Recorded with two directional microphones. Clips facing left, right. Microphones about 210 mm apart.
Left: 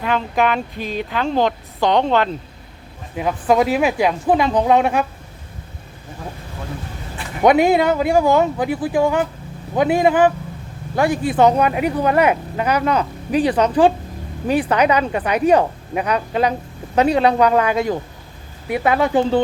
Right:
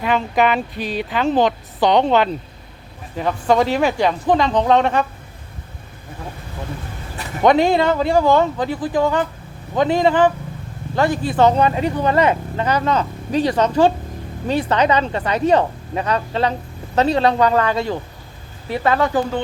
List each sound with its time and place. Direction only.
0.0 s speech: centre (ahead or behind)
7.4 s speech: 5° left (ahead or behind); by 19.4 s 25° left (ahead or behind)